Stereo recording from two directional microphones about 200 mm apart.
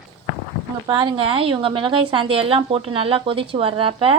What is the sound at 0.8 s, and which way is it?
A woman's voice, 25° right (ahead or behind).